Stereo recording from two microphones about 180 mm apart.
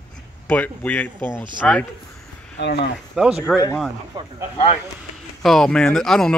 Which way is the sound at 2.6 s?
75° left (ahead or behind).